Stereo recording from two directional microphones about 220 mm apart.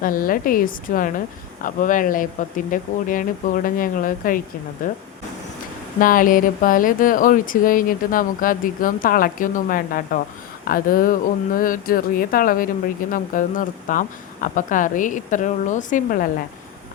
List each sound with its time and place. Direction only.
0.0 s speech: 40° left (ahead or behind)
6.0 s speech: 40° left (ahead or behind)